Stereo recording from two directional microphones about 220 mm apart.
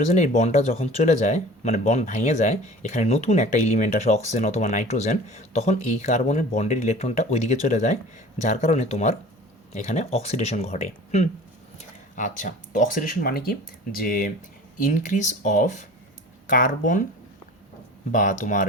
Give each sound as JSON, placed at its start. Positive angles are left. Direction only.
{"t": 0.1, "sound": "speech", "side_deg": 30}
{"t": 18.1, "sound": "speech", "side_deg": 35}